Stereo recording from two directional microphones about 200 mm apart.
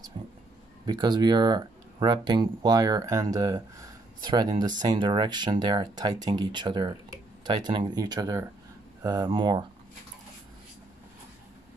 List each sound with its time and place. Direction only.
0.2 s speech: 25° right (ahead or behind)